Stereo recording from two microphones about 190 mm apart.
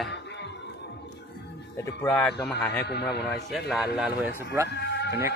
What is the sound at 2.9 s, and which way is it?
Speech, 60° left (ahead or behind).